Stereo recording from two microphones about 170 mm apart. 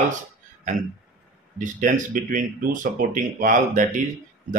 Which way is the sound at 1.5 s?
50° right (ahead or behind).